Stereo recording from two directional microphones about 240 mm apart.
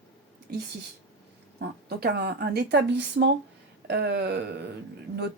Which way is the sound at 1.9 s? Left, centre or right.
Right.